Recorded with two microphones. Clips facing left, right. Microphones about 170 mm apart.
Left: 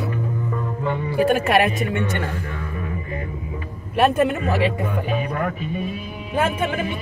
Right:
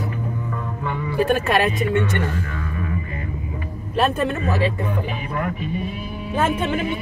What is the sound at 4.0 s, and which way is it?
Speech, 15° left (ahead or behind).